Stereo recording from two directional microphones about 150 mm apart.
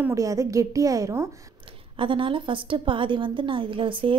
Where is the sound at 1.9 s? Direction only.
35° right (ahead or behind).